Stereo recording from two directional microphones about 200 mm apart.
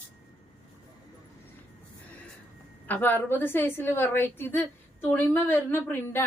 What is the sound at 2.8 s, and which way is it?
A woman's voice, 10° left (ahead or behind).